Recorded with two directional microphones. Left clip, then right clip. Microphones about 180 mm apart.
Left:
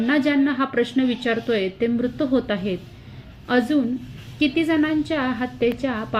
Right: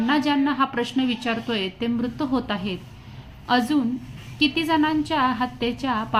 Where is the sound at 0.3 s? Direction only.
5° left (ahead or behind).